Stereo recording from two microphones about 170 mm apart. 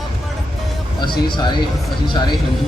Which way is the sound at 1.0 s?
25° left (ahead or behind).